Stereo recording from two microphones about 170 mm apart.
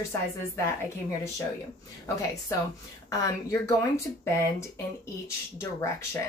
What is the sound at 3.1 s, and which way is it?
Speech, 20° left (ahead or behind).